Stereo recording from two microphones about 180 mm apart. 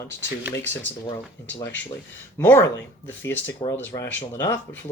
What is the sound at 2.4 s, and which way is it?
Speech, 10° left (ahead or behind).